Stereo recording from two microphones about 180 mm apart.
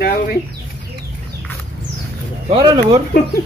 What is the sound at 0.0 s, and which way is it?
Chicken, 55° left (ahead or behind).